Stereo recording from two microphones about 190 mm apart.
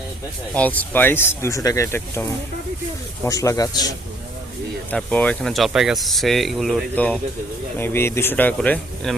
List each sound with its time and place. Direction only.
0.5 s speech: 10° left (ahead or behind)
3.2 s a man's voice: 15° left (ahead or behind)
4.9 s speech: 5° left (ahead or behind)